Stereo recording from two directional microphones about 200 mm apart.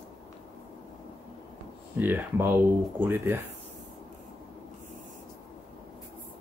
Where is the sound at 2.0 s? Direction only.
10° right (ahead or behind).